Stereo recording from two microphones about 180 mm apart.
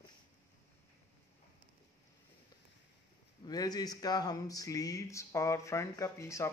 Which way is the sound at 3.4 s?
20° left (ahead or behind).